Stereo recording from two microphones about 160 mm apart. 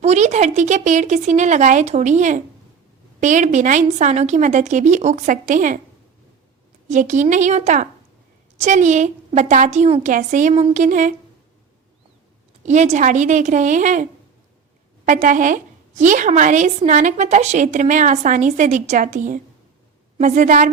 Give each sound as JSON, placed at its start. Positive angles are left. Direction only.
{"t": 0.0, "sound": "a woman's voice", "side_deg": -45}
{"t": 6.8, "sound": "a woman's voice", "side_deg": -50}
{"t": 10.5, "sound": "a woman's voice", "side_deg": -40}
{"t": 12.6, "sound": "a woman's voice", "side_deg": -45}